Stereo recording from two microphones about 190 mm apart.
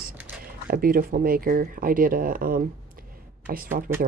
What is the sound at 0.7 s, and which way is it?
Speech, 50° right (ahead or behind).